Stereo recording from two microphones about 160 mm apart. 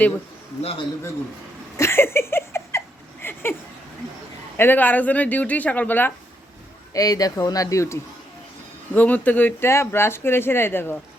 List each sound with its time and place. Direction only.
0.6 s a man's voice: 40° left (ahead or behind)
1.7 s a sound: 15° left (ahead or behind)
4.5 s speech: 15° left (ahead or behind)
6.9 s speech: 25° left (ahead or behind)
9.0 s speech: 10° left (ahead or behind)